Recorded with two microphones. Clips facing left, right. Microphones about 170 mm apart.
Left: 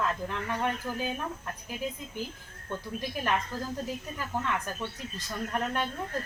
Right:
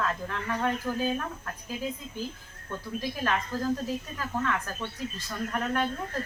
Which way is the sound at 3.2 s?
20° left (ahead or behind).